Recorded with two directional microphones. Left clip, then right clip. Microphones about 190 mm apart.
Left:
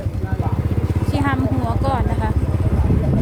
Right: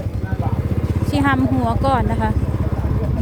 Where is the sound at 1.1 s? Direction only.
45° right (ahead or behind).